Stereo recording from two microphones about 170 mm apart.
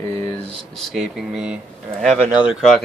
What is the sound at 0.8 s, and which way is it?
Speech, centre (ahead or behind).